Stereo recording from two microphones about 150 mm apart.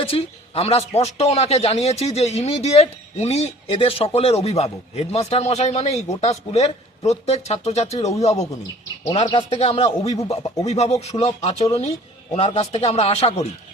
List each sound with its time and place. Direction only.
0.0 s speech: 40° left (ahead or behind)
9.5 s speech: 45° left (ahead or behind)